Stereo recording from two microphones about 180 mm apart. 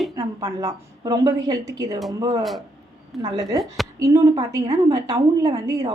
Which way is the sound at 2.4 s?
Centre (ahead or behind).